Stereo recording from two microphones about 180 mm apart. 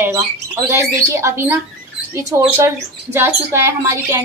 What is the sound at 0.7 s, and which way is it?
Speech, 15° right (ahead or behind).